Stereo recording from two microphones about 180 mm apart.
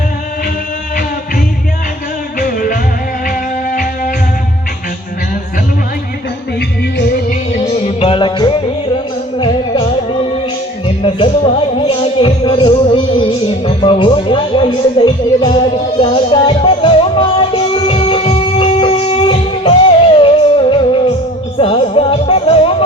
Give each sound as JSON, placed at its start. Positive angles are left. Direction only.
{"t": 2.4, "sound": "music", "side_deg": 50}
{"t": 7.0, "sound": "music", "side_deg": 50}
{"t": 13.7, "sound": "speech", "side_deg": 30}
{"t": 16.0, "sound": "music", "side_deg": 30}